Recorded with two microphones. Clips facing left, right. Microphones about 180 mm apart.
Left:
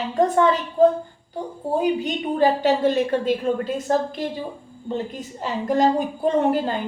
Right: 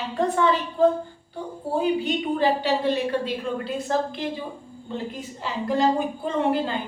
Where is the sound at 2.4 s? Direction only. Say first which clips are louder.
Left 6 dB; 45° left (ahead or behind).